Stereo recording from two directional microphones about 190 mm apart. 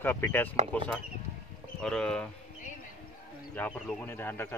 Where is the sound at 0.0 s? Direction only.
10° left (ahead or behind).